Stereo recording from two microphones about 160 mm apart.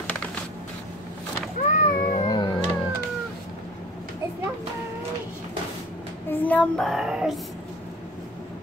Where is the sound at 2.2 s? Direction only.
25° left (ahead or behind).